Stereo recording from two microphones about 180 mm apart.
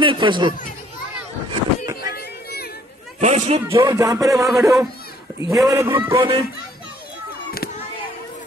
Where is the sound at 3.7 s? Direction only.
20° right (ahead or behind).